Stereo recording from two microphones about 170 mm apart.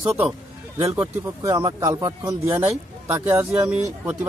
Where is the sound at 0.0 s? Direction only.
15° right (ahead or behind).